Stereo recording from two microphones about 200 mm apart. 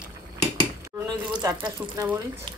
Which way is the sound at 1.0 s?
20° right (ahead or behind).